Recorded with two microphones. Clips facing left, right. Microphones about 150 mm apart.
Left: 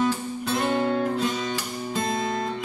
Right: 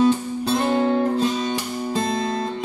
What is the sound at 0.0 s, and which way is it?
Guitar, 30° right (ahead or behind).